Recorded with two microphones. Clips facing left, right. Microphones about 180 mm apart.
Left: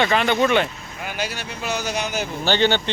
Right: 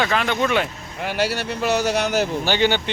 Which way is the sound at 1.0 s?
65° right (ahead or behind).